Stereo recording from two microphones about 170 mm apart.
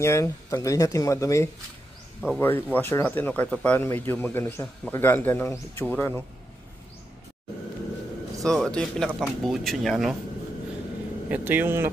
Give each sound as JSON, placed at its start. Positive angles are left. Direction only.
{"t": 0.0, "sound": "speech", "side_deg": 15}
{"t": 8.4, "sound": "speech", "side_deg": 0}
{"t": 11.2, "sound": "speech", "side_deg": -10}